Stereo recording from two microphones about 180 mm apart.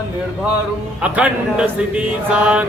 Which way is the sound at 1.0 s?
5° right (ahead or behind).